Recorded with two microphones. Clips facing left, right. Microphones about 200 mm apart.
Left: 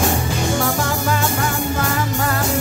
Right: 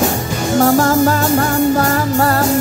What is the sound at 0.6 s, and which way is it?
Music, 40° right (ahead or behind).